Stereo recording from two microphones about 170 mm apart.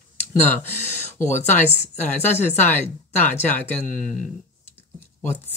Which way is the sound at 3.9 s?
50° left (ahead or behind).